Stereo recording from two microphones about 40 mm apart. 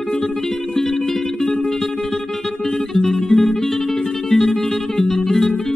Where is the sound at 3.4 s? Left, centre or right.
Centre.